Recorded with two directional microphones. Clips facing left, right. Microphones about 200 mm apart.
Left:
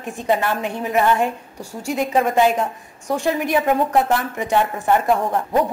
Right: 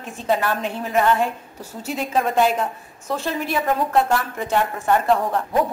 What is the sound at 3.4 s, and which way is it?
A woman's voice, 15° left (ahead or behind).